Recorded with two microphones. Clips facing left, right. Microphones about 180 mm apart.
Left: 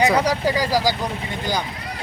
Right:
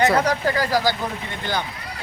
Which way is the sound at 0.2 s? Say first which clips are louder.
Left 1 dB; 15° left (ahead or behind).